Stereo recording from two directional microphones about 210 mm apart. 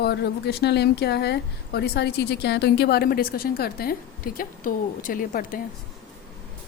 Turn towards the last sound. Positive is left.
turn(degrees=40)  # may be behind; listen again after turning